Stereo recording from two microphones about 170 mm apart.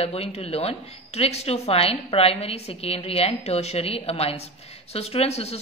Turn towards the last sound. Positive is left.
turn(degrees=35)  # may be behind; listen again after turning